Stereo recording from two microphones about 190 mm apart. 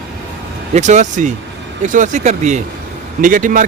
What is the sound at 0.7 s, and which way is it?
Speech, 40° right (ahead or behind).